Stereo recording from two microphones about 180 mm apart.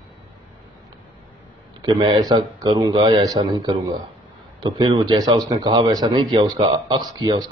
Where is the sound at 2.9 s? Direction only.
35° right (ahead or behind).